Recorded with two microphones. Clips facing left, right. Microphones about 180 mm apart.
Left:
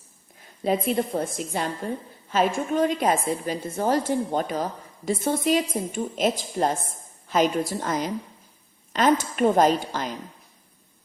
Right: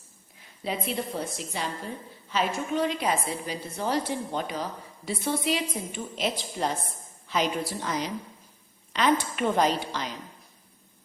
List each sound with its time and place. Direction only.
0.6 s a woman's voice: 45° left (ahead or behind)